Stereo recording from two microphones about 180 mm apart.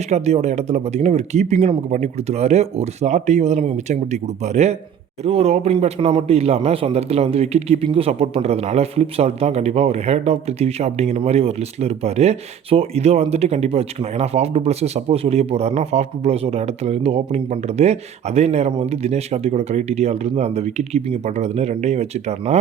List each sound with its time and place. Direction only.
0.1 s speech: 40° right (ahead or behind)